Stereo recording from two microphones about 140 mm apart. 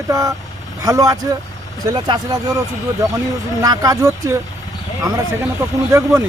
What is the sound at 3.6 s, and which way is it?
Speech, 25° right (ahead or behind).